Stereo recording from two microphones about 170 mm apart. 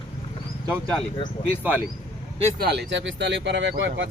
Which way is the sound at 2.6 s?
75° right (ahead or behind).